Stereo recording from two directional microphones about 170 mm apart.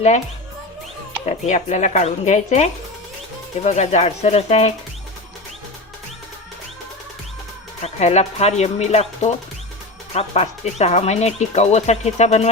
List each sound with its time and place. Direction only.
1.2 s speech: 40° left (ahead or behind)
7.8 s speech: 40° left (ahead or behind)